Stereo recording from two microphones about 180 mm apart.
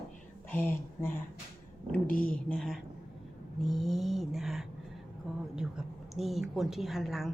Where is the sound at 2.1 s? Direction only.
50° left (ahead or behind).